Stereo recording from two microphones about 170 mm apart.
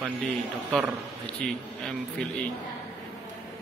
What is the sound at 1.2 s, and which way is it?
Speech, 5° left (ahead or behind).